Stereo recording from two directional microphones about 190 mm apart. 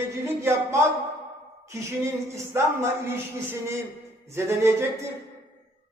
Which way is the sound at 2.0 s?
15° right (ahead or behind).